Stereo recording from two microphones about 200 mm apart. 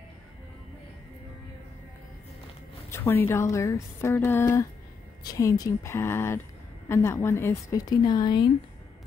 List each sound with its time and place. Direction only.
2.9 s a woman's voice: 10° left (ahead or behind)